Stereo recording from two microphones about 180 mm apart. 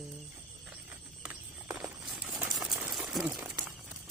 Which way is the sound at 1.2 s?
5° right (ahead or behind).